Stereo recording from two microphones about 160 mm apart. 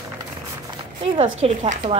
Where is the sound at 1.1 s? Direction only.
40° right (ahead or behind).